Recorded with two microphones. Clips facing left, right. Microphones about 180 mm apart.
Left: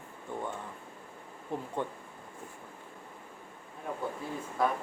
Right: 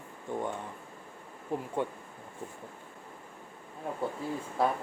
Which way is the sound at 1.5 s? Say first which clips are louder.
Right 2 dB; 10° right (ahead or behind).